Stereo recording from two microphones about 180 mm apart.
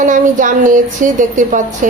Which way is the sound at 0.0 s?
45° right (ahead or behind).